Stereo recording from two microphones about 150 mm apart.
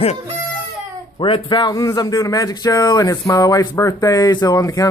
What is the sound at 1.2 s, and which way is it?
Speech, 35° left (ahead or behind).